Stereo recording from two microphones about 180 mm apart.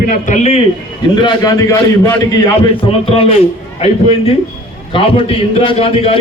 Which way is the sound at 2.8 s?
30° left (ahead or behind).